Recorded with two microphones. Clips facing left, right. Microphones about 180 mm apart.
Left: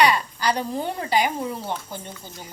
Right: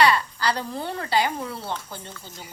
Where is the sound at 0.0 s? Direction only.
15° left (ahead or behind).